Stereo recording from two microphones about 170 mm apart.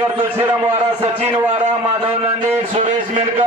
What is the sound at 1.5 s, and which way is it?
A man's voice, 40° right (ahead or behind).